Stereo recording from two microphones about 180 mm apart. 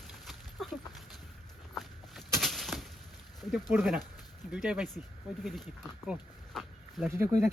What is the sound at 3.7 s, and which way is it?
Speech, centre (ahead or behind).